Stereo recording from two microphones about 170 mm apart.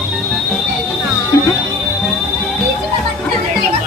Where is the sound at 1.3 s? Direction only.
15° left (ahead or behind).